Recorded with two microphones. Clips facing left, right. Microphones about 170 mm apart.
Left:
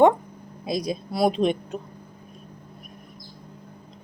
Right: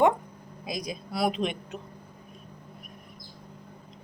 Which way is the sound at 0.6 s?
30° left (ahead or behind).